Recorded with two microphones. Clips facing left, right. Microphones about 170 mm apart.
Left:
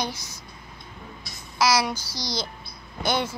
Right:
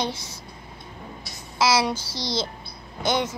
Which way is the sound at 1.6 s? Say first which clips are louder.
Right 1 dB; 25° right (ahead or behind).